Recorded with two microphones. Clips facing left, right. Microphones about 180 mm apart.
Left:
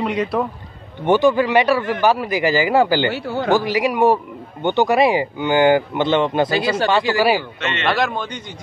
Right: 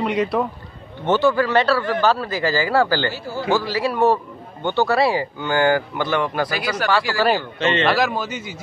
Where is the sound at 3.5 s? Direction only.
15° left (ahead or behind).